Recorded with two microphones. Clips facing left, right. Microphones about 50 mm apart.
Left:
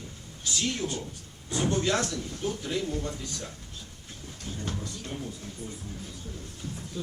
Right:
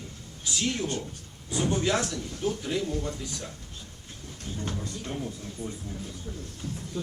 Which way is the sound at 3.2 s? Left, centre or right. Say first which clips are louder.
Right 1 dB; centre.